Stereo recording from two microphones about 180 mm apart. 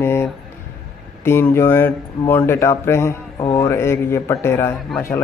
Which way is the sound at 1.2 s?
15° left (ahead or behind).